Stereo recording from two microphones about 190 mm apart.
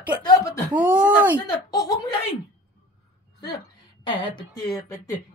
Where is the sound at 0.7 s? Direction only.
5° right (ahead or behind).